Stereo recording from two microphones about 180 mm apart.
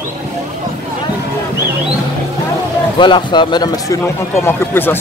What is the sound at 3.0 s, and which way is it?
Speech, 25° left (ahead or behind).